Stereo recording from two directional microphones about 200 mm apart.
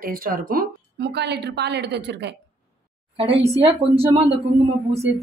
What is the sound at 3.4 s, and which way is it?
Speech, 30° right (ahead or behind).